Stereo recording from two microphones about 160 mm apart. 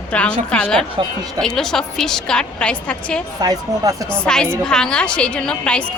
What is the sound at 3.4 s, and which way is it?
Speech, 20° right (ahead or behind).